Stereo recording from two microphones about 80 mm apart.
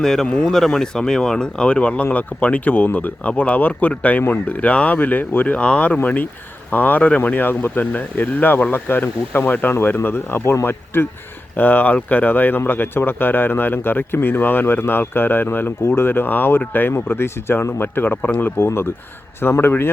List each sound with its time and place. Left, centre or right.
0.0 s speech: centre; by 19.9 s left